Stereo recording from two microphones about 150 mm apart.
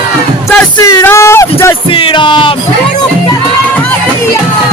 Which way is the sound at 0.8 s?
20° left (ahead or behind).